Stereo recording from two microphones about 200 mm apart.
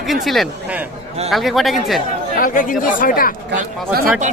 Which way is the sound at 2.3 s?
45° left (ahead or behind).